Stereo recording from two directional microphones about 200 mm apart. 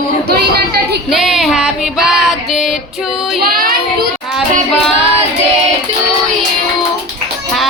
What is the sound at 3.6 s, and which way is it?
Child singing, 45° right (ahead or behind).